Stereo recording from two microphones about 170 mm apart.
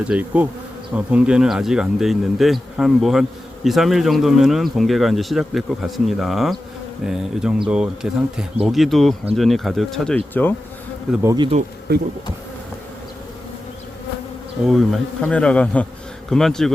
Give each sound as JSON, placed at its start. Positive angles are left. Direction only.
{"t": 0.0, "sound": "bee", "side_deg": -5}
{"t": 0.9, "sound": "speech", "side_deg": -5}
{"t": 11.2, "sound": "bee", "side_deg": -20}
{"t": 14.6, "sound": "speech", "side_deg": 0}